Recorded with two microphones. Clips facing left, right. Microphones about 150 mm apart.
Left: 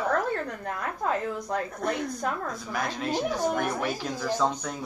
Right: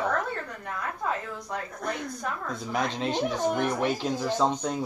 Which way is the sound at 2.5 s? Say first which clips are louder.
Right 2 dB; 25° right (ahead or behind).